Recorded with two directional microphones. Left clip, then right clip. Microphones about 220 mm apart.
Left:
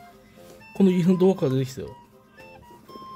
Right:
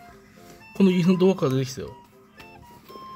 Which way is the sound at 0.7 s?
Centre (ahead or behind).